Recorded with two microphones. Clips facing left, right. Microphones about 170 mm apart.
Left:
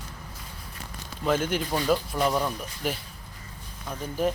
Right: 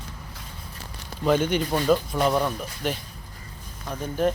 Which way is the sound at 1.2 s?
Centre (ahead or behind).